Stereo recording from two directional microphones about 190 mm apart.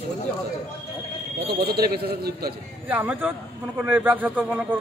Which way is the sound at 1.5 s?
55° right (ahead or behind).